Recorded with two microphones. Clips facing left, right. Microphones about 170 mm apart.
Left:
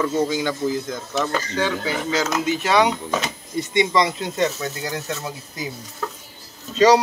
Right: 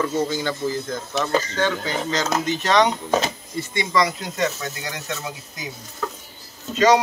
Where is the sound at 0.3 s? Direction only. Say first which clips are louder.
Left 2 dB; 15° left (ahead or behind).